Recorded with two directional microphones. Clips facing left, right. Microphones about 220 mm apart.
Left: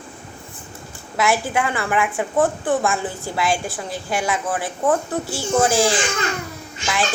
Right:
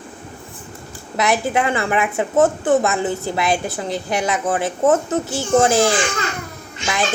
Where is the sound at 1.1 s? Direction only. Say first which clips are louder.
Right 2 dB; 20° right (ahead or behind).